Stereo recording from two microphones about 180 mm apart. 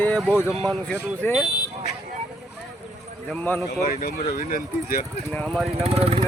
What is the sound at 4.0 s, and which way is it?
Speech, 55° left (ahead or behind).